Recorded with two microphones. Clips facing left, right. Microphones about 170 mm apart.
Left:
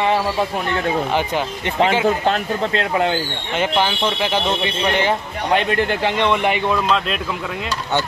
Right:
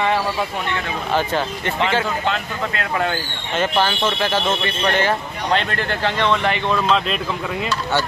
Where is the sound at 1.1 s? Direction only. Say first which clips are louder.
Even; 15° left (ahead or behind).